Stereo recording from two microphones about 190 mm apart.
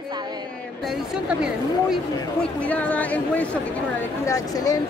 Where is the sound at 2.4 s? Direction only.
5° left (ahead or behind).